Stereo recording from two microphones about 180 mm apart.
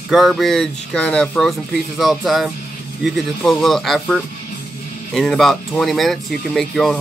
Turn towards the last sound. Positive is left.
turn(degrees=0)  # may be behind; listen again after turning